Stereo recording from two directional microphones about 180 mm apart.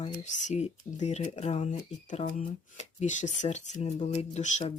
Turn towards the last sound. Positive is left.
turn(degrees=40)  # may be behind; listen again after turning